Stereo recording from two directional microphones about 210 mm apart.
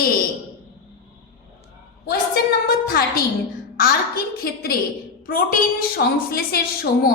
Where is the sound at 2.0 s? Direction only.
50° left (ahead or behind).